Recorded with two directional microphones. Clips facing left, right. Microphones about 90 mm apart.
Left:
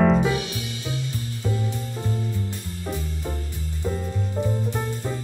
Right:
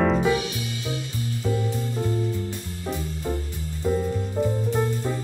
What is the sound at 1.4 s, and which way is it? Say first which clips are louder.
Music: right 2 dB; 10° left (ahead or behind).